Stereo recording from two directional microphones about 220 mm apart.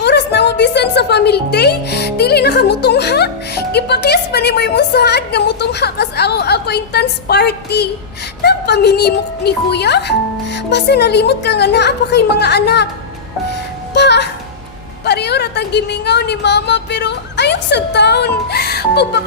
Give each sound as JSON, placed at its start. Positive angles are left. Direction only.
{"t": 0.0, "sound": "a woman's voice", "side_deg": 50}
{"t": 13.9, "sound": "a child's voice", "side_deg": 50}